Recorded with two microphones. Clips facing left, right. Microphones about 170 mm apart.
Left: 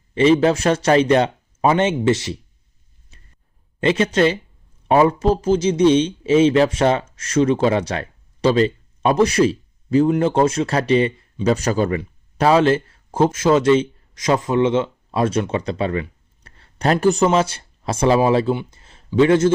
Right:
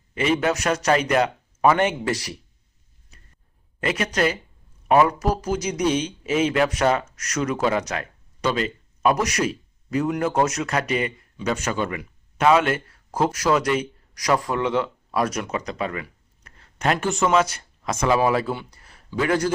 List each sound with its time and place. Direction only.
0.1 s speech: 30° left (ahead or behind)
3.1 s a sound: 25° left (ahead or behind)
3.8 s a man's voice: 25° left (ahead or behind)